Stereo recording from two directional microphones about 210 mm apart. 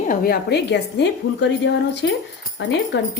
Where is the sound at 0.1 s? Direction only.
45° left (ahead or behind).